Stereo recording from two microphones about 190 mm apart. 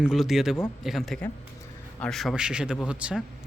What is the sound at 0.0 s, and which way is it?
A man's voice, centre (ahead or behind).